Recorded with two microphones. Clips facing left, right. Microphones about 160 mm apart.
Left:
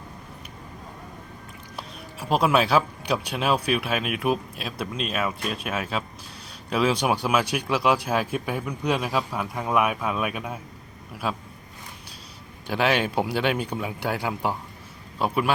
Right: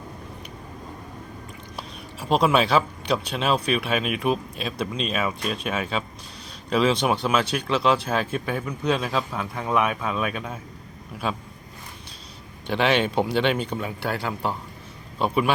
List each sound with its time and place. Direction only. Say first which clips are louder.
1.7 s speech: left 1 dB; centre (ahead or behind)
12.6 s speech: right 2 dB; 5° left (ahead or behind)